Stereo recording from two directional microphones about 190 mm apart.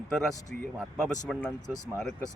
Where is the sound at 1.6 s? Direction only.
15° right (ahead or behind).